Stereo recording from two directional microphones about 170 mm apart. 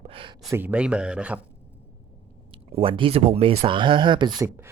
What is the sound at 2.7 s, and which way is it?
Speech, 30° right (ahead or behind).